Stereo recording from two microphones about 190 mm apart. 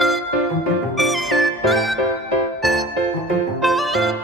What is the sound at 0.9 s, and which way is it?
Music, centre (ahead or behind).